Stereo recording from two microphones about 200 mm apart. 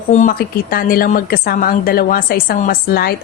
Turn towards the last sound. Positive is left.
turn(degrees=50)  # may be behind; listen again after turning